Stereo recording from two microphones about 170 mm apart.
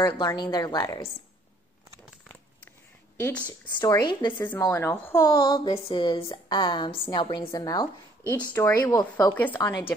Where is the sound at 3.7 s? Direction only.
25° left (ahead or behind).